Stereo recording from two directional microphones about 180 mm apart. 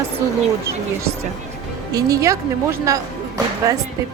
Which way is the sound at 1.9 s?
20° right (ahead or behind).